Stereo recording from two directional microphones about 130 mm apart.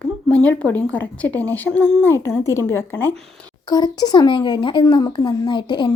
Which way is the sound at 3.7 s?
30° left (ahead or behind).